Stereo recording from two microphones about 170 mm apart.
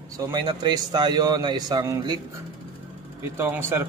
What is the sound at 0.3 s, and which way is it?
A man's voice, 25° right (ahead or behind).